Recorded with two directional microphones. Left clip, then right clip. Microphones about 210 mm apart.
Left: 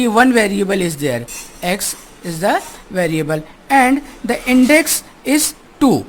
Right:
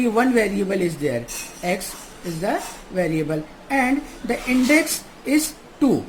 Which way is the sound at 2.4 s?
55° left (ahead or behind).